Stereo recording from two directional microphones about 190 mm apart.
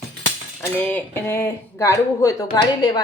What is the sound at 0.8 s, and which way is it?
A woman's voice, 10° left (ahead or behind).